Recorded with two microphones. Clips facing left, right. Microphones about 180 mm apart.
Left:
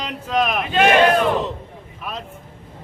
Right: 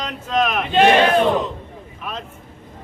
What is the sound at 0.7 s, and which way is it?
Battle cry, 30° right (ahead or behind).